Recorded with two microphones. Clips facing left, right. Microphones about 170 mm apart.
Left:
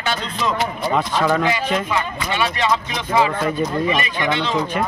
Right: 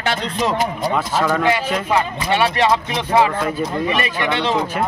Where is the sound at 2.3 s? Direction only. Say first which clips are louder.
Right 4 dB; 65° right (ahead or behind).